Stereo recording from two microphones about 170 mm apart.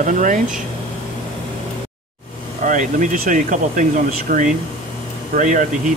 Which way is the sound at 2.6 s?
50° right (ahead or behind).